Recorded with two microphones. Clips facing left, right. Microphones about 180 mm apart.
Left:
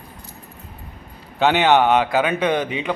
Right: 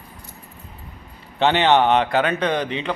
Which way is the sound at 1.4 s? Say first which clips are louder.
Left 1 dB; 10° left (ahead or behind).